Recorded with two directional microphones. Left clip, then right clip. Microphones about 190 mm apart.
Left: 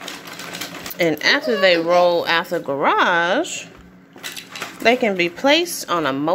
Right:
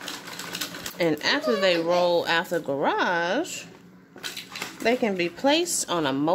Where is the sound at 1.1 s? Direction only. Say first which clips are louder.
Left 7 dB; 10° right (ahead or behind).